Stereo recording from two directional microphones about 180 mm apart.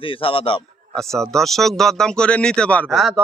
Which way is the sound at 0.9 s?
Centre (ahead or behind).